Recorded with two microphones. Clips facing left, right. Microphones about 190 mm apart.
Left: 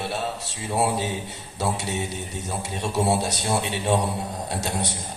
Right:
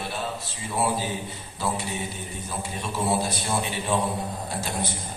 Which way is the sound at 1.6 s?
75° left (ahead or behind).